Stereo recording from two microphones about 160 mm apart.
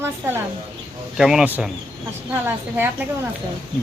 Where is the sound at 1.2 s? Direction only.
5° right (ahead or behind).